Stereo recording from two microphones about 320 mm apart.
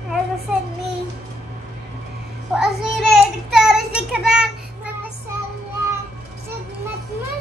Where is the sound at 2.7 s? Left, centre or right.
Centre.